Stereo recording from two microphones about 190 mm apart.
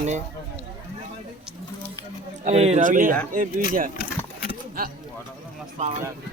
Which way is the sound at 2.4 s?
35° right (ahead or behind).